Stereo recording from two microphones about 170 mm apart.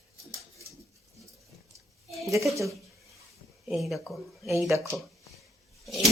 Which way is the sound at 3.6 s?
Centre (ahead or behind).